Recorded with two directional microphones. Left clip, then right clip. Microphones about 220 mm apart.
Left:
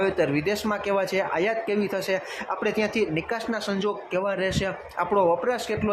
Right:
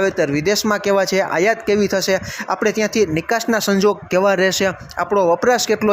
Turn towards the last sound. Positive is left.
turn(degrees=-30)  # may be behind; listen again after turning